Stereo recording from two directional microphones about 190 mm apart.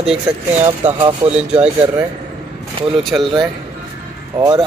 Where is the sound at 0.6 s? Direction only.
15° right (ahead or behind).